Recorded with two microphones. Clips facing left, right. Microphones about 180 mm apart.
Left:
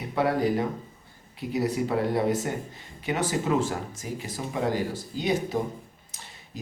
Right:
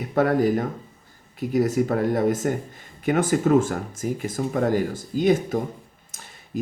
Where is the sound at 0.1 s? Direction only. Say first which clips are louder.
Right 5 dB; 50° right (ahead or behind).